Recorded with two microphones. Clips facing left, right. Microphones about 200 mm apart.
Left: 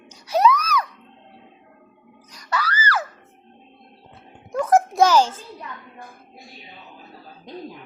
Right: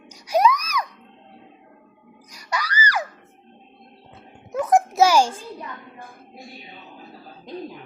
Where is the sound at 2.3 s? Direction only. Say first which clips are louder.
Left 2 dB; 10° right (ahead or behind).